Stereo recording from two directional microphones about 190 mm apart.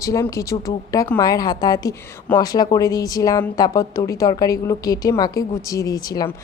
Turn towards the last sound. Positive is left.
turn(degrees=20)  # may be behind; listen again after turning